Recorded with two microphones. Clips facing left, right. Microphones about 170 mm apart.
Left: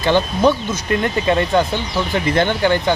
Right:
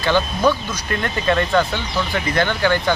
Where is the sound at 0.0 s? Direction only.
20° left (ahead or behind).